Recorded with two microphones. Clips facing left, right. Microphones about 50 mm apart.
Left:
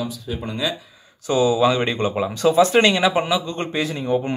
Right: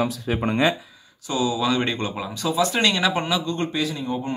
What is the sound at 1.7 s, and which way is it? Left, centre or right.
Speech, centre.